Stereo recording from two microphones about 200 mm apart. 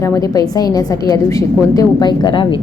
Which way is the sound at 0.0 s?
15° left (ahead or behind).